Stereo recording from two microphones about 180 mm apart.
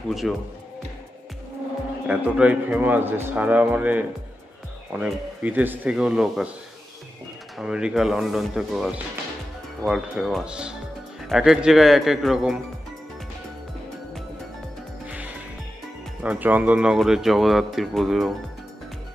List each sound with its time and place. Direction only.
0.1 s speech: centre (ahead or behind)
2.0 s a man's voice: 5° right (ahead or behind)
7.5 s speech: 5° right (ahead or behind)
16.2 s speech: 10° right (ahead or behind)